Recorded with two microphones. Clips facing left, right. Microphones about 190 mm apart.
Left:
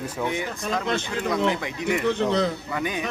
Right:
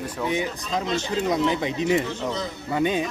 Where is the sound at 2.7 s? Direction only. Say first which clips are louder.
Right 5 dB; 25° right (ahead or behind).